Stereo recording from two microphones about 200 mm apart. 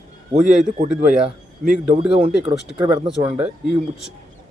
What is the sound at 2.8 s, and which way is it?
Speech, 25° right (ahead or behind).